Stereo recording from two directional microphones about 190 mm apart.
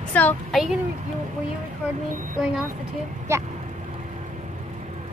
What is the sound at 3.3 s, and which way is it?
Speech, 15° right (ahead or behind).